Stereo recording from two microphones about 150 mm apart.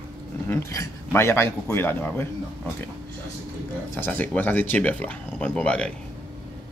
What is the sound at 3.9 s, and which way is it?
Speech, 15° left (ahead or behind).